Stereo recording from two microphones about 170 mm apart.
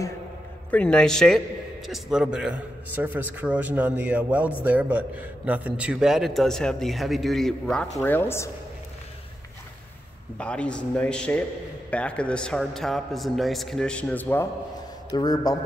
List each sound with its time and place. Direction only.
0.7 s a man's voice: 10° left (ahead or behind)
10.3 s a man's voice: 5° left (ahead or behind)
15.1 s a man's voice: 25° left (ahead or behind)